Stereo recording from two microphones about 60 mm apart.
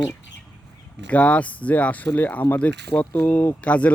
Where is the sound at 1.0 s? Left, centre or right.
Left.